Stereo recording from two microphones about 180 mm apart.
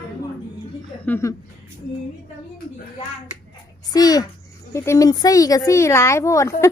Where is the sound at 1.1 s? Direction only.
15° left (ahead or behind).